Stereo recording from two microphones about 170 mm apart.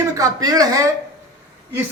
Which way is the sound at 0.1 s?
20° right (ahead or behind).